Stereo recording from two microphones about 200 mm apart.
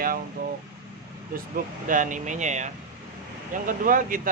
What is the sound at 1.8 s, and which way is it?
Speech, 40° right (ahead or behind).